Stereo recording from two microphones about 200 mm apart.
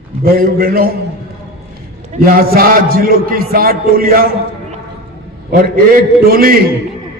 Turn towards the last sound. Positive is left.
turn(degrees=-45)  # may be behind; listen again after turning